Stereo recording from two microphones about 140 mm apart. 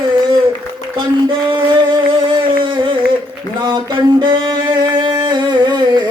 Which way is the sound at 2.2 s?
40° right (ahead or behind).